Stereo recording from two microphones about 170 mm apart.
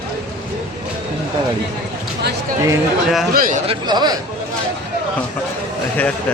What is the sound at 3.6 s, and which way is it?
Speech, 30° right (ahead or behind).